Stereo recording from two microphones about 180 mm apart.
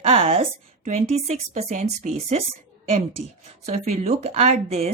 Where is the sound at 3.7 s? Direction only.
35° right (ahead or behind).